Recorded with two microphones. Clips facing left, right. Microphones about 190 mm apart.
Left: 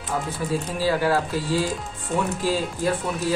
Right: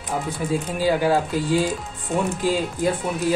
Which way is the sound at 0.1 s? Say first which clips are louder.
Right 2 dB; 20° right (ahead or behind).